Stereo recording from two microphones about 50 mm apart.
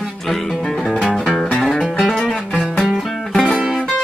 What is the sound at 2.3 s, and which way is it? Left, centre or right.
Music, centre.